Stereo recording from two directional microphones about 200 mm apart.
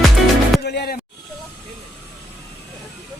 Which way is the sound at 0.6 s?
55° left (ahead or behind).